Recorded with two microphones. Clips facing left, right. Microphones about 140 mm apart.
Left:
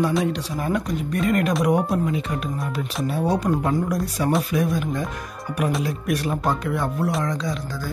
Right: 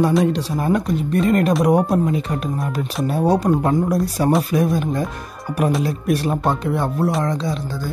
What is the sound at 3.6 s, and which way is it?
Speech, 40° right (ahead or behind).